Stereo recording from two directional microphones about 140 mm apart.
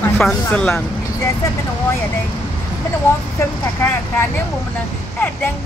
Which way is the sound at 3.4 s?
20° left (ahead or behind).